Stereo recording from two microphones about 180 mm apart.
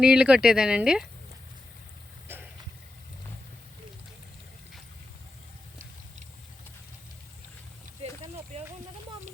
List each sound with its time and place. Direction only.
0.0 s speech: 5° right (ahead or behind)
2.2 s vehicle: 10° right (ahead or behind)
8.5 s a sound: 40° right (ahead or behind)